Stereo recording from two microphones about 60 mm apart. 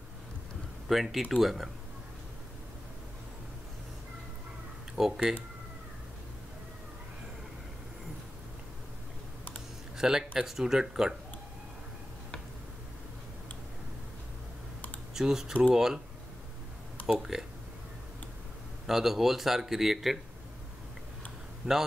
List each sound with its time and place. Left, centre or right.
0.8 s speech: centre
4.9 s speech: centre
9.9 s speech: centre
15.1 s speech: centre
17.0 s speech: centre
18.9 s speech: centre
21.6 s a man's voice: centre